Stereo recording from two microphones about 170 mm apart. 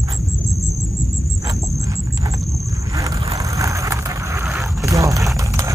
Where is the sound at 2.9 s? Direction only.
20° right (ahead or behind).